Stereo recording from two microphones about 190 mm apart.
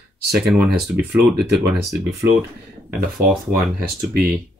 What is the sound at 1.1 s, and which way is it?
Speech, 60° right (ahead or behind).